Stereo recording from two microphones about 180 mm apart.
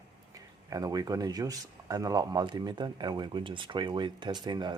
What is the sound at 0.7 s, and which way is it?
Speech, 20° right (ahead or behind).